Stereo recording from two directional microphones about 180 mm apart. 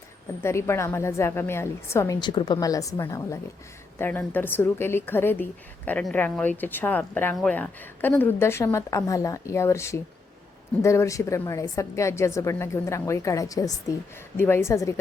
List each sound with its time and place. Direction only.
0.4 s a woman's voice: 15° left (ahead or behind)